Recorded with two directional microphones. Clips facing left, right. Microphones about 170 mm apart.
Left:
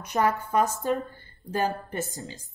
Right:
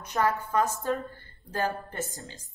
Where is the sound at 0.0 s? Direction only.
15° left (ahead or behind).